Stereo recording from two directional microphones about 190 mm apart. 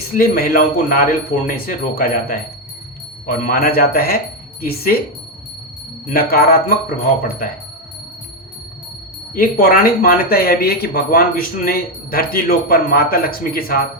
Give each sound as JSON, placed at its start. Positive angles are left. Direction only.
{"t": 0.1, "sound": "speech", "side_deg": 50}
{"t": 6.1, "sound": "speech", "side_deg": 50}
{"t": 9.3, "sound": "speech", "side_deg": 50}